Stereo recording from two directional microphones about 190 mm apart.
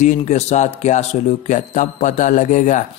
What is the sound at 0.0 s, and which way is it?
A man's voice, 40° left (ahead or behind).